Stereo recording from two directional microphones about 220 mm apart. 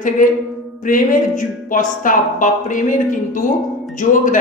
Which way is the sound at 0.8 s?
40° left (ahead or behind).